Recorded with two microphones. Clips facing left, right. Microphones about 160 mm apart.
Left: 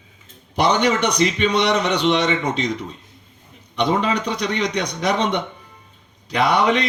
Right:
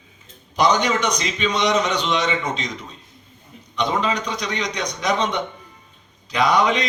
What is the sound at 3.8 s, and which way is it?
A man's voice, 60° left (ahead or behind).